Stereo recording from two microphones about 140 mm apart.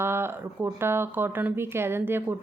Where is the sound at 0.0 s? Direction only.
15° right (ahead or behind).